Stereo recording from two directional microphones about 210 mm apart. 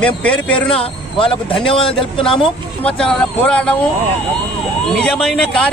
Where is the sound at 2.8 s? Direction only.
5° left (ahead or behind).